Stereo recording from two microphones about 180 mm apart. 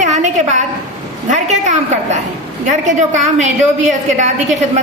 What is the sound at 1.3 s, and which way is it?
A woman's voice, 40° right (ahead or behind).